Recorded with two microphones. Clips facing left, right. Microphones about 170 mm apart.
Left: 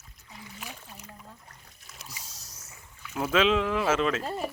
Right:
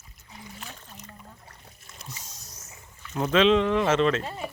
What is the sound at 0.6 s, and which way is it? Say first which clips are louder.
Rowboat: even; 10° left (ahead or behind).